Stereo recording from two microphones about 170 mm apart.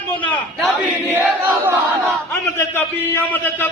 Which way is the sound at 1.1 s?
10° right (ahead or behind).